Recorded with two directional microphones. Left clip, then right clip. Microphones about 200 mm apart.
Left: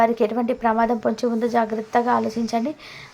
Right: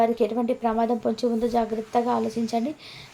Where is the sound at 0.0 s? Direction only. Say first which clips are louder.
Left 3 dB; 15° left (ahead or behind).